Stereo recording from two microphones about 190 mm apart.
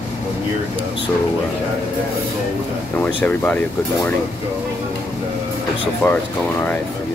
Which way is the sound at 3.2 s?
10° left (ahead or behind).